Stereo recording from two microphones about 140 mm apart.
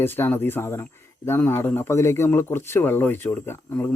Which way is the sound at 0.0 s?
15° left (ahead or behind).